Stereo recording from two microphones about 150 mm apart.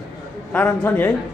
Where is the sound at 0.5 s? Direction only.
10° left (ahead or behind).